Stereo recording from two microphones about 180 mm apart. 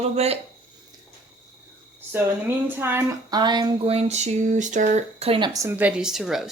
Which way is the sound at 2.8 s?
15° right (ahead or behind).